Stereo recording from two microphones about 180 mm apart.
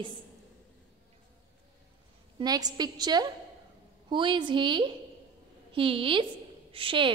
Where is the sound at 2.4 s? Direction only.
20° right (ahead or behind).